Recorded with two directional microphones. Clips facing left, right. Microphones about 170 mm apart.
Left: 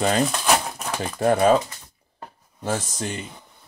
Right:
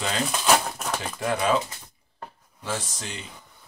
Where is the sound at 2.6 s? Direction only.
50° left (ahead or behind).